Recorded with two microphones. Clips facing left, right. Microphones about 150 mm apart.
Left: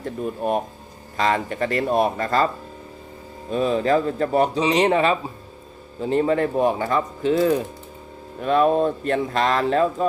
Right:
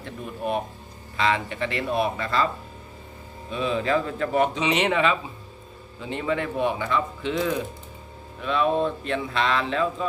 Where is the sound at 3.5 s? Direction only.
40° left (ahead or behind).